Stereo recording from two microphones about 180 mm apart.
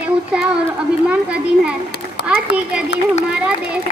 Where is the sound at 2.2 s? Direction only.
70° left (ahead or behind).